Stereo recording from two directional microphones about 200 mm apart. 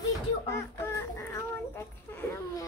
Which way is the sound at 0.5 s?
15° left (ahead or behind).